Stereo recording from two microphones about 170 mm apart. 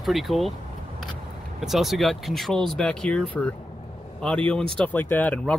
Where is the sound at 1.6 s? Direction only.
Centre (ahead or behind).